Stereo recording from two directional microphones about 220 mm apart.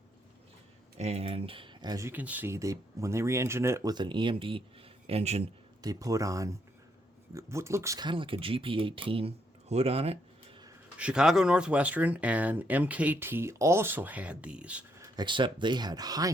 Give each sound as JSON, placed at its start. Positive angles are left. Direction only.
{"t": 0.9, "sound": "speech", "side_deg": -30}
{"t": 5.8, "sound": "speech", "side_deg": -15}
{"t": 10.9, "sound": "speech", "side_deg": -5}